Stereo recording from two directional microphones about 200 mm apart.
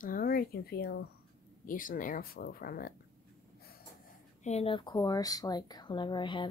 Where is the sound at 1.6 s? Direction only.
45° left (ahead or behind).